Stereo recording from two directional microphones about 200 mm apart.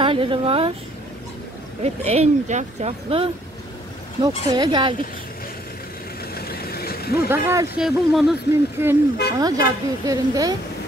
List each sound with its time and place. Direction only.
0.0 s speech: 25° right (ahead or behind)
1.8 s speech: 35° right (ahead or behind)
6.3 s vehicle: 50° left (ahead or behind)
7.2 s speech: 15° right (ahead or behind)
7.8 s speech: centre (ahead or behind); by 10.6 s 20° right (ahead or behind)